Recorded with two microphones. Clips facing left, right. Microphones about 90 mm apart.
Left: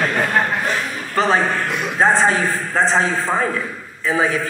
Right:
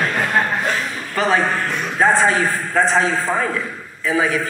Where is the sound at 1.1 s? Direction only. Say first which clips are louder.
Left 1 dB; 30° left (ahead or behind).